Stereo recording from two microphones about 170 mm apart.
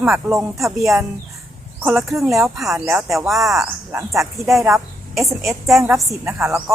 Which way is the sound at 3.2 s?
Centre (ahead or behind).